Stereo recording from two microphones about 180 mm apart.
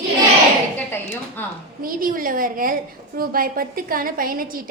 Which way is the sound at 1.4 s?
10° left (ahead or behind).